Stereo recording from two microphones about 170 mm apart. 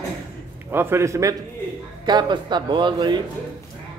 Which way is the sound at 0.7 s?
15° right (ahead or behind).